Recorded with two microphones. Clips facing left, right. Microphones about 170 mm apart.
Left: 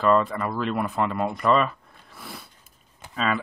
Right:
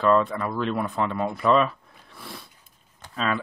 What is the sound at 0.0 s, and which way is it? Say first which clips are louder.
Speech: even; centre (ahead or behind).